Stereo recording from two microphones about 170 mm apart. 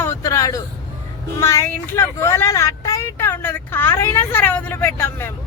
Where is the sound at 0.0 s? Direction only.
15° left (ahead or behind).